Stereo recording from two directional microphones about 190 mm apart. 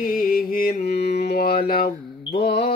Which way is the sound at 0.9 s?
55° left (ahead or behind).